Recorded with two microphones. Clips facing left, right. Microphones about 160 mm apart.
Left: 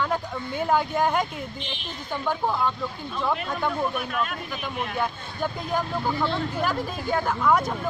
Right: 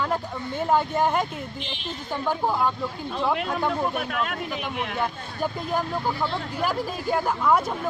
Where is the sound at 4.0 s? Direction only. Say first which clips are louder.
Right 1 dB; 70° right (ahead or behind).